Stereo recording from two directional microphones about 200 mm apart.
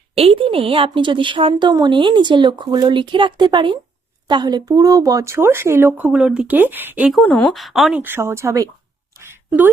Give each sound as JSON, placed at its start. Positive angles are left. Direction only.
{"t": 0.2, "sound": "a woman's voice", "side_deg": -25}